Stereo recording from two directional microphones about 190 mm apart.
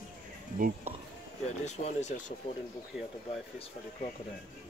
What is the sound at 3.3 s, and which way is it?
Speech, 30° left (ahead or behind).